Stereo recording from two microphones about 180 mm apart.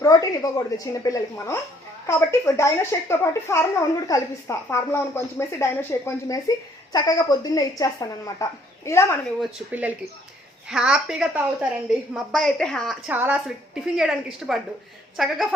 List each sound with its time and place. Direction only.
0.0 s a woman's voice: 20° left (ahead or behind)
9.4 s a woman's voice: 10° right (ahead or behind)
13.1 s a woman's voice: 10° right (ahead or behind)